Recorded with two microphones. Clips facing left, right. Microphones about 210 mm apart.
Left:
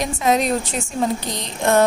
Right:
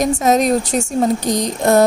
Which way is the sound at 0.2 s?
45° right (ahead or behind).